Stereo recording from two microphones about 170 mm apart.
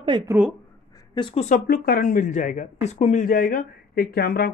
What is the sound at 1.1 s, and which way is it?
Speech, 30° left (ahead or behind).